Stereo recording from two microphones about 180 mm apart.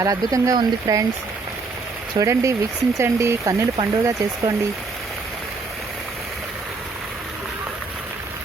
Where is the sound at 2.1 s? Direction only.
15° right (ahead or behind).